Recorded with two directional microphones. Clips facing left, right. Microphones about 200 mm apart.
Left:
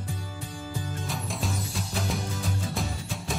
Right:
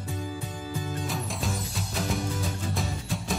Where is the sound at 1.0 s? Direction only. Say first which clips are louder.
Right 1 dB; centre (ahead or behind).